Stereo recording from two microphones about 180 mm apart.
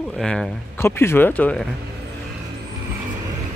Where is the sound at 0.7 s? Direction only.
15° left (ahead or behind).